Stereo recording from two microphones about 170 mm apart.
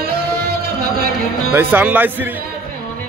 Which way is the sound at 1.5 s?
10° right (ahead or behind).